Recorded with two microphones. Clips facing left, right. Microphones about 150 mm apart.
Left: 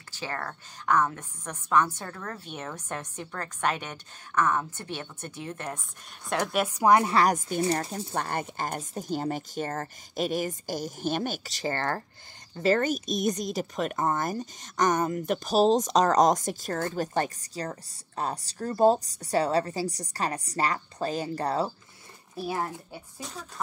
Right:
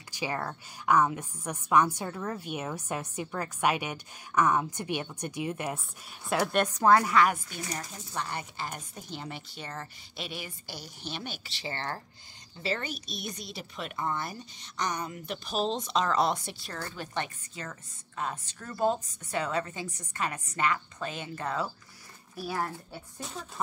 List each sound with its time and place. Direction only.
0.1 s a woman's voice: 10° right (ahead or behind); by 7.1 s 15° left (ahead or behind)
7.1 s speech: 35° left (ahead or behind)
8.1 s a woman's voice: 50° left (ahead or behind); by 21.6 s 35° left (ahead or behind)
22.3 s speech: 25° left (ahead or behind)
22.9 s speech: 5° left (ahead or behind)